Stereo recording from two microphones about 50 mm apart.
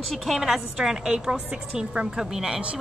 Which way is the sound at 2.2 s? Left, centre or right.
Centre.